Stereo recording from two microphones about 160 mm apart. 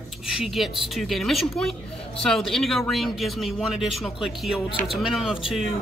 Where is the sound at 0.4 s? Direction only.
Centre (ahead or behind).